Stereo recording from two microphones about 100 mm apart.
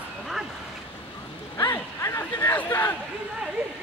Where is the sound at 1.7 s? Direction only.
30° left (ahead or behind).